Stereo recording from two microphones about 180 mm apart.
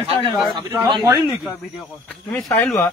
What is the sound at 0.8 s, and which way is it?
Speech, 20° right (ahead or behind).